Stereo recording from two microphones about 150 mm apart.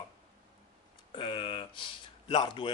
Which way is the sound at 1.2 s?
35° left (ahead or behind).